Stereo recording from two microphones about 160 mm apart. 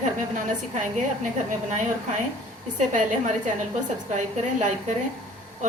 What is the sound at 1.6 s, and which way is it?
Speech, 50° right (ahead or behind).